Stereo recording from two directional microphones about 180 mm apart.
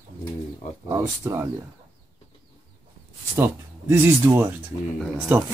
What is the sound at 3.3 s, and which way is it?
Speech, 10° right (ahead or behind).